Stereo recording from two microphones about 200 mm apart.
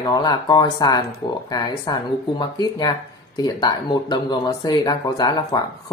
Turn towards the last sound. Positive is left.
turn(degrees=20)  # may be behind; listen again after turning